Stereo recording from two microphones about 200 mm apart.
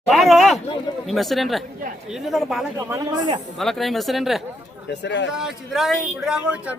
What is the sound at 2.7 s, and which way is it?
Speech, 20° right (ahead or behind).